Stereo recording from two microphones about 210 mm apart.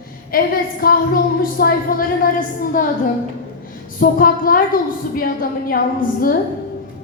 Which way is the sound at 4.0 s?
40° left (ahead or behind).